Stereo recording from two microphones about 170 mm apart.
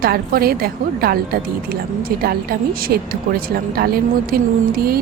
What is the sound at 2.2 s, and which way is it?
A woman's voice, 65° right (ahead or behind).